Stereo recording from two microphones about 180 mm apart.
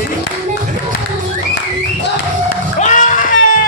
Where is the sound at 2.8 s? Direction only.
45° left (ahead or behind).